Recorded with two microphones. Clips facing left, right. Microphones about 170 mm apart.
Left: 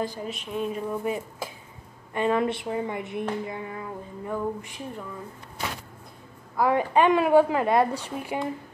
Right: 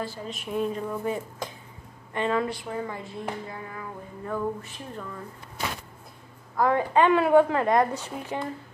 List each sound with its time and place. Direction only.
0.0 s a woman's voice: 15° left (ahead or behind)
0.3 s speech: centre (ahead or behind)
0.7 s a woman's voice: 15° left (ahead or behind)
6.5 s a woman's voice: 10° left (ahead or behind)